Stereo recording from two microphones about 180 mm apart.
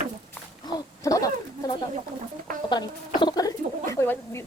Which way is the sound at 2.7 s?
25° left (ahead or behind).